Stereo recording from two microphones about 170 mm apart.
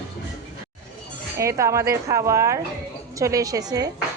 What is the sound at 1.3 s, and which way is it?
A woman's voice, 15° right (ahead or behind).